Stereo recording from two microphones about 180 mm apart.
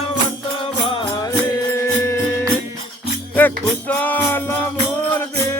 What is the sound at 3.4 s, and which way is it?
Music, 10° left (ahead or behind).